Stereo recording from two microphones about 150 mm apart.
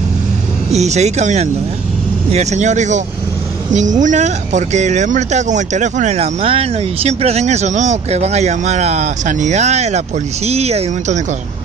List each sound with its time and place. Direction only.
0.7 s speech: 50° right (ahead or behind)